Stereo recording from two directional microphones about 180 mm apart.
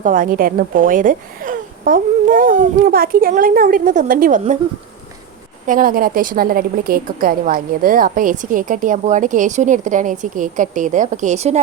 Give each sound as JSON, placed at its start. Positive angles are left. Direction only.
{"t": 0.0, "sound": "a woman's voice", "side_deg": -50}
{"t": 5.6, "sound": "a woman's voice", "side_deg": -50}